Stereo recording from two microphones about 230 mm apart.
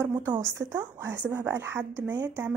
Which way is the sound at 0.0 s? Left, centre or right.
Centre.